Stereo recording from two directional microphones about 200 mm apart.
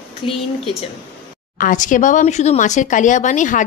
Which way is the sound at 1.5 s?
40° left (ahead or behind).